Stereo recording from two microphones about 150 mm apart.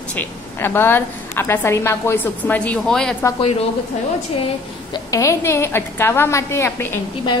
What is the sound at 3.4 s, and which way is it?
Speech, 40° left (ahead or behind).